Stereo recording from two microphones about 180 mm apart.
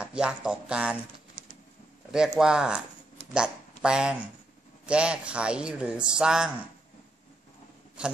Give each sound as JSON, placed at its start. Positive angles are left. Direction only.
{"t": 0.0, "sound": "speech", "side_deg": -5}
{"t": 1.4, "sound": "printer", "side_deg": -40}
{"t": 2.0, "sound": "speech", "side_deg": -5}